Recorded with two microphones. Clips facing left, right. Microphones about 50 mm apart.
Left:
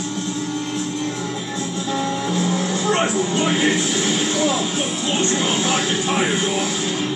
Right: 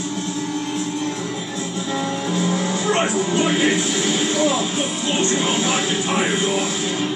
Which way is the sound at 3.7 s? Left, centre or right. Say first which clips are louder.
Even; right.